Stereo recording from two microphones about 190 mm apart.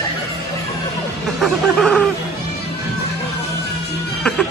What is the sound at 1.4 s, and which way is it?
Music, 5° left (ahead or behind).